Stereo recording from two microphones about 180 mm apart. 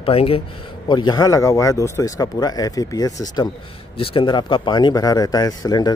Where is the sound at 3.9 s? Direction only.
30° left (ahead or behind).